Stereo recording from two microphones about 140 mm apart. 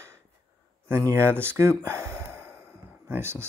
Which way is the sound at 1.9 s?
15° right (ahead or behind).